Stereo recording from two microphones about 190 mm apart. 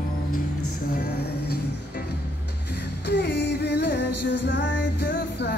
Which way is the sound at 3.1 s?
60° left (ahead or behind).